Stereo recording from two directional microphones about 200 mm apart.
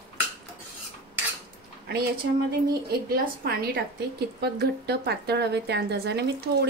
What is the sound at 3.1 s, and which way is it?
A woman's voice, 50° right (ahead or behind).